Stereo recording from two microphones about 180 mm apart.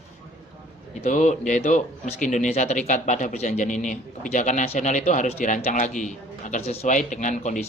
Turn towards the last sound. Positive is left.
turn(degrees=40)  # may be behind; listen again after turning